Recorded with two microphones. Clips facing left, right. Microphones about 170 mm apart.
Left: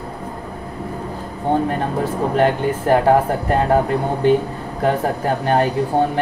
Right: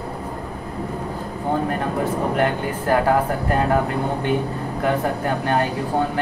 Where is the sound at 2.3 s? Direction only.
30° left (ahead or behind).